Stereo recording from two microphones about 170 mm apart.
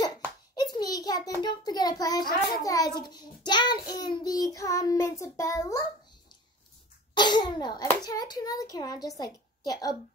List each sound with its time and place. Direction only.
0.6 s a sound: 25° left (ahead or behind)
1.6 s child singing: 25° left (ahead or behind)
7.2 s child singing: 25° left (ahead or behind)